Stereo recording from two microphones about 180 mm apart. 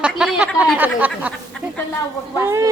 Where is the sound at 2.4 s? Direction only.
15° right (ahead or behind).